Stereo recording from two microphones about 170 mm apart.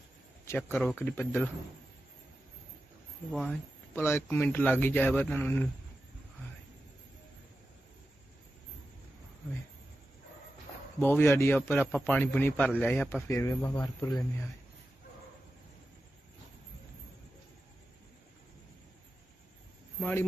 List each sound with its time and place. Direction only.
0.4 s a man's voice: 15° left (ahead or behind)
3.3 s speech: 5° left (ahead or behind)
11.0 s speech: 15° left (ahead or behind)
20.0 s speech: 10° left (ahead or behind)